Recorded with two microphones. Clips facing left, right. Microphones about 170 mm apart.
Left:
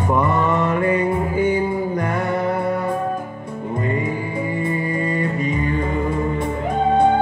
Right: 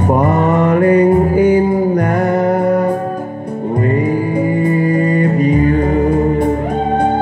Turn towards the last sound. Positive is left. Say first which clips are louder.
# right 9 dB
turn(degrees=-40)  # may be behind; listen again after turning